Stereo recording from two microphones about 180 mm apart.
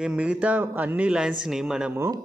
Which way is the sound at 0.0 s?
5° right (ahead or behind).